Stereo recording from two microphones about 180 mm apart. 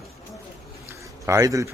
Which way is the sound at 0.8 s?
15° right (ahead or behind).